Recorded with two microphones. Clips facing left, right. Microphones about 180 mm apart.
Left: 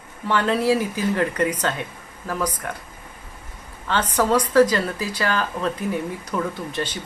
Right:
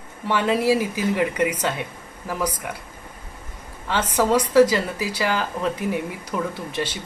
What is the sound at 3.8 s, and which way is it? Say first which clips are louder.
Speech: even; 10° right (ahead or behind).